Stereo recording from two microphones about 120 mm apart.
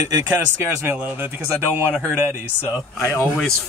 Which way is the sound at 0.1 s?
20° right (ahead or behind).